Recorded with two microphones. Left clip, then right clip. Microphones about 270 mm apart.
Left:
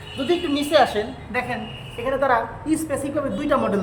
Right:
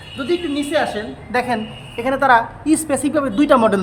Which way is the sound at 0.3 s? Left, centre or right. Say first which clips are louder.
Right 1 dB; centre.